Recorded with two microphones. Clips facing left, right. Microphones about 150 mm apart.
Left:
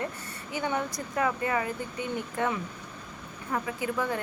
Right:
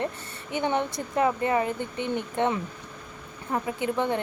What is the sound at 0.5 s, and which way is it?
Speech, 25° right (ahead or behind).